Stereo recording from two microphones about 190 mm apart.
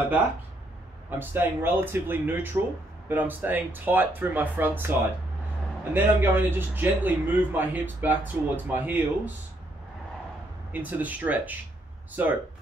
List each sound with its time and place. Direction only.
1.1 s a man's voice: 10° right (ahead or behind)
5.9 s a man's voice: 10° right (ahead or behind)
10.7 s a man's voice: 10° right (ahead or behind)